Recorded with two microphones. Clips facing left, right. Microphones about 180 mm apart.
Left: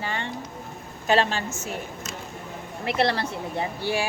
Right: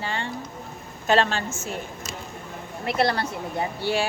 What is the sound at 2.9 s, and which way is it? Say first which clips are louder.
Speech: right 1 dB; 30° left (ahead or behind).